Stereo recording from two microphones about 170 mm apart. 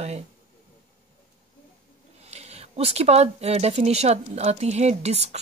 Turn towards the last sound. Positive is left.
turn(degrees=-40)  # may be behind; listen again after turning